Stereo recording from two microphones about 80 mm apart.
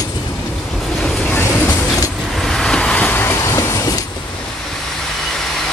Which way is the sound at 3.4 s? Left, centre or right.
Left.